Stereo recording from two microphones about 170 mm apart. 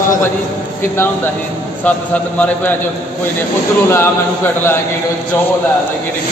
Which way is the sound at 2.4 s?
10° left (ahead or behind).